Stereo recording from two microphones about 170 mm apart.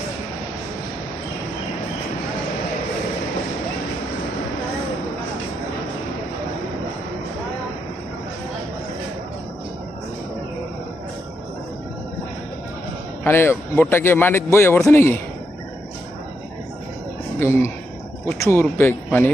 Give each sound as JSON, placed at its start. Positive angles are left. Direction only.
{"t": 13.2, "sound": "a man's voice", "side_deg": 15}
{"t": 17.4, "sound": "a man's voice", "side_deg": 15}